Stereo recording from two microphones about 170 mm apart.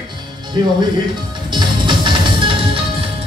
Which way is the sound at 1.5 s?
25° right (ahead or behind).